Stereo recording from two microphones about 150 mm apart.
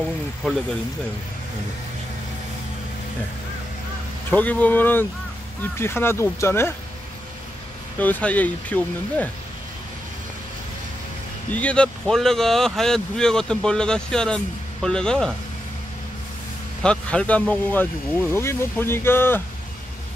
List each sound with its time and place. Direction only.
4.3 s speech: 10° left (ahead or behind)
8.0 s speech: 10° left (ahead or behind)
11.5 s speech: 10° left (ahead or behind)
16.8 s speech: 5° left (ahead or behind)